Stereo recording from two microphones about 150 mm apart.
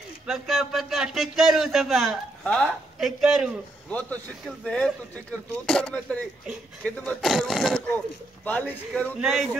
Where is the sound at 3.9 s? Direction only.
10° left (ahead or behind).